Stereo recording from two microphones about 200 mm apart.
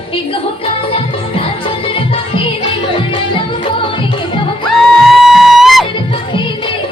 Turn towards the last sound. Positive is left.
turn(degrees=0)  # may be behind; listen again after turning